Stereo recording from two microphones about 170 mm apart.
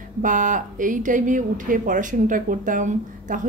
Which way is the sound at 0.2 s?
50° right (ahead or behind).